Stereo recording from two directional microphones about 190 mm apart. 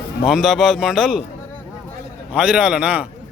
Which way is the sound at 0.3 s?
Centre (ahead or behind).